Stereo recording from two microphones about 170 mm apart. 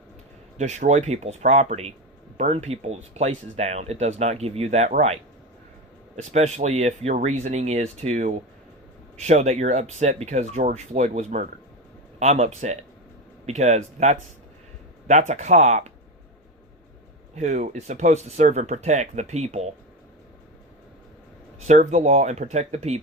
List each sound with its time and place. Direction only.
0.5 s speech: 40° right (ahead or behind)
6.3 s speech: 40° right (ahead or behind)
17.3 s speech: 45° right (ahead or behind)
21.8 s speech: 40° right (ahead or behind)